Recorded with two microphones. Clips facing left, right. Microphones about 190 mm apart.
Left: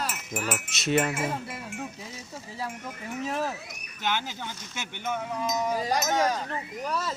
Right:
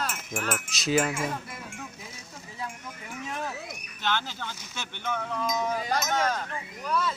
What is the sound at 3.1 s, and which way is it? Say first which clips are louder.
Speech: left 5 dB; 35° left (ahead or behind).